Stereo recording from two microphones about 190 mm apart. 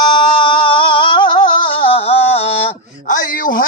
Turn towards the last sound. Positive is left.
turn(degrees=45)  # may be behind; listen again after turning